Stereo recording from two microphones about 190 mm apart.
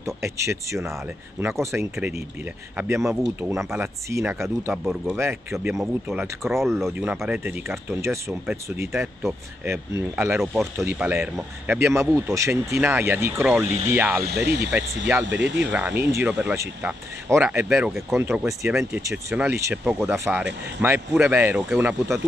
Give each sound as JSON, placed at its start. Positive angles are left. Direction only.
{"t": 0.0, "sound": "speech", "side_deg": -15}
{"t": 9.7, "sound": "speech", "side_deg": -15}
{"t": 14.2, "sound": "speech", "side_deg": -60}
{"t": 15.7, "sound": "speech", "side_deg": -10}